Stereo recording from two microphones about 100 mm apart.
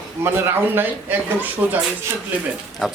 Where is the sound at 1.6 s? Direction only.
15° right (ahead or behind).